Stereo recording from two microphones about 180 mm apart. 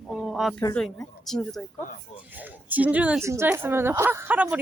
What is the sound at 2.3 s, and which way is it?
Speech, 10° right (ahead or behind).